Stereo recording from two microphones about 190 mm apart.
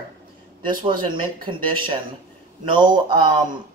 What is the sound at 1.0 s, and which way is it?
Speech, 25° right (ahead or behind).